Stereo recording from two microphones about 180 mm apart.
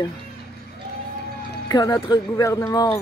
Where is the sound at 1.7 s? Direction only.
20° left (ahead or behind).